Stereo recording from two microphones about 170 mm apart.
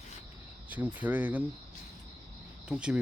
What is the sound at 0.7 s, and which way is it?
Speech, 10° right (ahead or behind).